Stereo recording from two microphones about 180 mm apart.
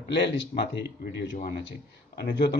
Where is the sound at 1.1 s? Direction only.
90° left.